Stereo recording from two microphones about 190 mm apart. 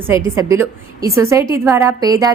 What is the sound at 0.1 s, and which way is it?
A woman's voice, 15° right (ahead or behind).